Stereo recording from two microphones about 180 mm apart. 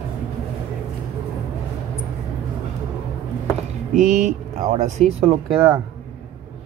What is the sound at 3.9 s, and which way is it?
Speech, 45° right (ahead or behind).